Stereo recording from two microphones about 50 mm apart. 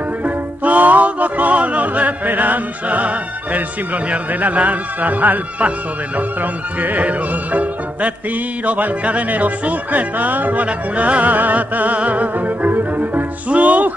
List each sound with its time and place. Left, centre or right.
0.2 s music: right